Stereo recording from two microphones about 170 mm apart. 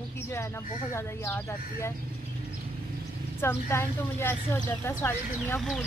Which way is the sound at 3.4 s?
15° left (ahead or behind).